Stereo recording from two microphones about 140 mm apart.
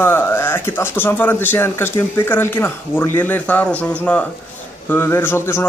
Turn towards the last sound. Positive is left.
turn(degrees=15)  # may be behind; listen again after turning